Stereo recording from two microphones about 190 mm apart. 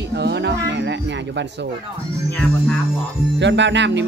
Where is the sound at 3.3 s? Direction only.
70° right (ahead or behind).